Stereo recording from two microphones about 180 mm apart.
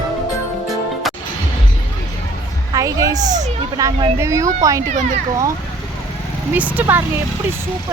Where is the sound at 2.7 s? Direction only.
20° right (ahead or behind).